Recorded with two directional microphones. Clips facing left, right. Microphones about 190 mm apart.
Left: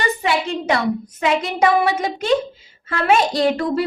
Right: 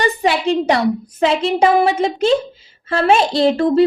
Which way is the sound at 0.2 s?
35° right (ahead or behind).